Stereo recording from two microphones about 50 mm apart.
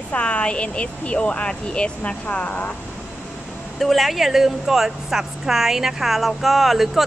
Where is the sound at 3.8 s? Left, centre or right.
Centre.